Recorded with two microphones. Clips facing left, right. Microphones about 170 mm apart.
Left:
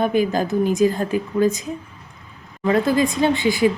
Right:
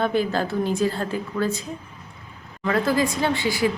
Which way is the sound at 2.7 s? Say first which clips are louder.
Left 4 dB; 20° left (ahead or behind).